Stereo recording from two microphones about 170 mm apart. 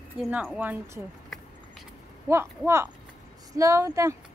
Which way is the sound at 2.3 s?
15° right (ahead or behind).